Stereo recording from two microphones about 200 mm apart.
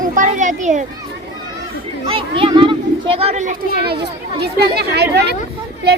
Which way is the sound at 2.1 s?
25° right (ahead or behind).